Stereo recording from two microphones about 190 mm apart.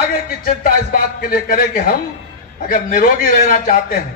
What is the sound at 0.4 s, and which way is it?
A man's voice, 50° left (ahead or behind).